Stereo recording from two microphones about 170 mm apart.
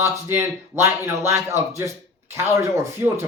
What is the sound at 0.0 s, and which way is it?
Speech, 15° right (ahead or behind).